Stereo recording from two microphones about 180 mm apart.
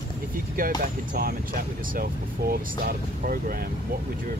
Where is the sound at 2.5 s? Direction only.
55° right (ahead or behind).